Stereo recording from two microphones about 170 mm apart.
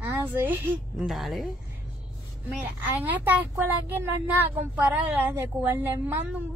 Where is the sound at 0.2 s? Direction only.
10° right (ahead or behind).